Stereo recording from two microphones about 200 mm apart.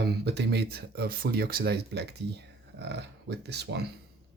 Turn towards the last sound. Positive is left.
turn(degrees=-55)  # may be behind; listen again after turning